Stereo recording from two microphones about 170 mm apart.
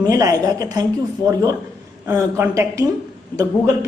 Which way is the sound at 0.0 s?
20° right (ahead or behind).